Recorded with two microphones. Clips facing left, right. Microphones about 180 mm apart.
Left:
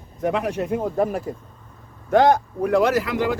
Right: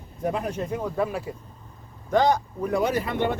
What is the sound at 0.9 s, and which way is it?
Speech, 45° left (ahead or behind).